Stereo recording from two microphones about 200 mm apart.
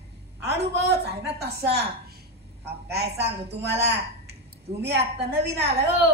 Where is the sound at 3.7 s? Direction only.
55° right (ahead or behind).